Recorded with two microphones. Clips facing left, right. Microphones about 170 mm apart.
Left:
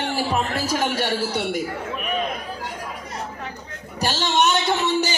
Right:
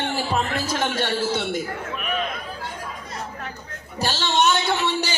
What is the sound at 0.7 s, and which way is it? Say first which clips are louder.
Speech: left 1 dB; 10° left (ahead or behind).